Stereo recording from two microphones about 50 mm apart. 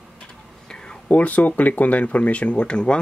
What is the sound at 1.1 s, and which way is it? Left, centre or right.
Speech, left.